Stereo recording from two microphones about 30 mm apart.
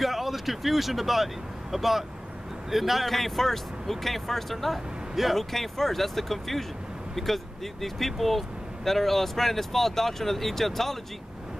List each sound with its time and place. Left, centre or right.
0.0 s speech: centre